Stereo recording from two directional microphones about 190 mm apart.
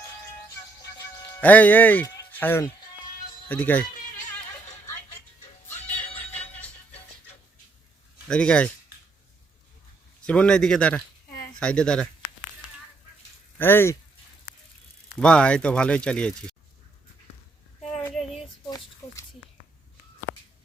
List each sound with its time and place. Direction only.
1.4 s speech: 10° left (ahead or behind)
6.5 s music: 10° left (ahead or behind)
8.3 s speech: 5° left (ahead or behind)
10.2 s speech: 5° left (ahead or behind)
13.6 s speech: 10° left (ahead or behind)
15.2 s speech: 5° left (ahead or behind)
18.1 s child singing: centre (ahead or behind)
19.0 s a sound: 15° left (ahead or behind)